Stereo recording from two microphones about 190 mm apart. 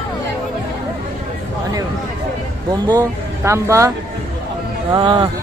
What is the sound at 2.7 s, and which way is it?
Speech, 20° right (ahead or behind).